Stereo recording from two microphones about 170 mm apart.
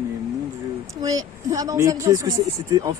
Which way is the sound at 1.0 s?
20° right (ahead or behind).